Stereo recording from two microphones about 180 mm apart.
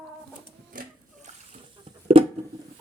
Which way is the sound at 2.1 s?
30° right (ahead or behind).